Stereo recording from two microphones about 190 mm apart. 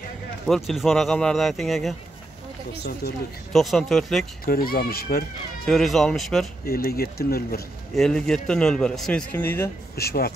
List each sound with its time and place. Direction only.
0.5 s a man's voice: centre (ahead or behind)
3.5 s a man's voice: centre (ahead or behind)
4.5 s speech: 50° left (ahead or behind)
5.7 s a man's voice: centre (ahead or behind)
6.6 s speech: 55° left (ahead or behind)
7.9 s a man's voice: centre (ahead or behind)
9.9 s speech: 55° left (ahead or behind)